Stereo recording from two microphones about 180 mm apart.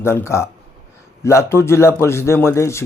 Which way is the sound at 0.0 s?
15° left (ahead or behind).